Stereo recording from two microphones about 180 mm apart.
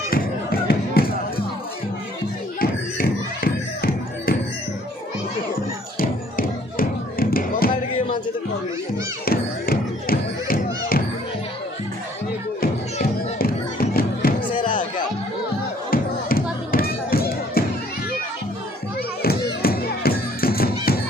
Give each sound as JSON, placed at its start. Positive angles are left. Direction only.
{"t": 0.1, "sound": "a sound", "side_deg": 55}
{"t": 2.6, "sound": "music", "side_deg": 55}
{"t": 5.9, "sound": "music", "side_deg": 55}
{"t": 9.2, "sound": "music", "side_deg": 55}
{"t": 13.4, "sound": "music", "side_deg": 55}
{"t": 14.5, "sound": "music", "side_deg": 25}
{"t": 15.9, "sound": "music", "side_deg": 55}
{"t": 19.2, "sound": "music", "side_deg": 60}